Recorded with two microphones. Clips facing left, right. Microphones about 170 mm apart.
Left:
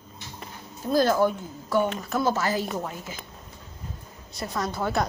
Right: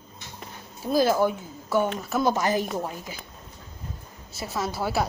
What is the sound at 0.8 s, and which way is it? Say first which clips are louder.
Speech: even; 10° right (ahead or behind).